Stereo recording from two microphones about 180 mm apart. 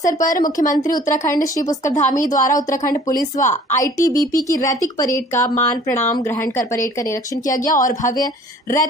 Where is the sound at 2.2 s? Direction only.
45° left (ahead or behind).